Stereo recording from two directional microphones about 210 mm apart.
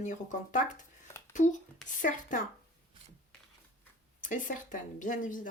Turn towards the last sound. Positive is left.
turn(degrees=40)  # may be behind; listen again after turning